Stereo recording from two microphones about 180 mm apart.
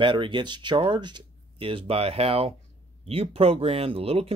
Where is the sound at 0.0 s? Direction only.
25° right (ahead or behind).